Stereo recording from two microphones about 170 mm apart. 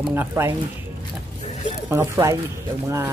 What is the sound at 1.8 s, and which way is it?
Speech, 15° right (ahead or behind).